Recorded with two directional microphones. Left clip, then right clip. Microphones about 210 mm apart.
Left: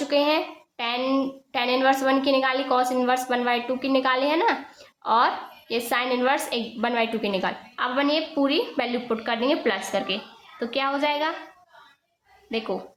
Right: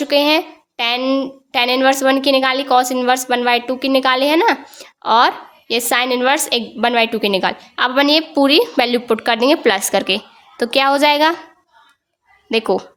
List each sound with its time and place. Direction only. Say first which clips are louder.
0.0 s a woman's voice: right 8 dB; 45° right (ahead or behind)
12.5 s a woman's voice: right 12 dB; 60° right (ahead or behind)